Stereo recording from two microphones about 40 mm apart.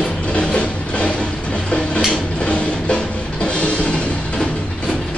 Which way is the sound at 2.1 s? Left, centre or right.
Left.